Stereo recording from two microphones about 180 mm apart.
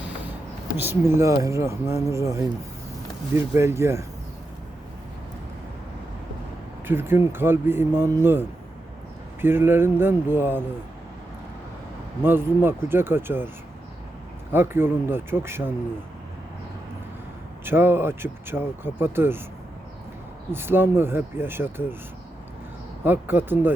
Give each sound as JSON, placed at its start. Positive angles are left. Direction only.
{"t": 0.8, "sound": "speech", "side_deg": -15}
{"t": 6.8, "sound": "speech", "side_deg": -10}
{"t": 12.2, "sound": "speech", "side_deg": -10}
{"t": 14.5, "sound": "speech", "side_deg": -10}
{"t": 17.7, "sound": "speech", "side_deg": -10}
{"t": 20.5, "sound": "speech", "side_deg": -10}
{"t": 23.0, "sound": "speech", "side_deg": -10}